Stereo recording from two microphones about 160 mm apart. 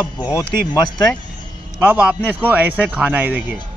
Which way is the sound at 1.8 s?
10° right (ahead or behind).